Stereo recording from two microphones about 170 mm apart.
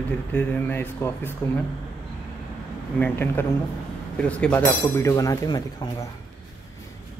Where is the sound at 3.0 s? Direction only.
10° left (ahead or behind).